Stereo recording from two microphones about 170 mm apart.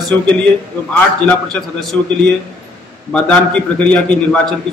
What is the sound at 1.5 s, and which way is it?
Speech, centre (ahead or behind).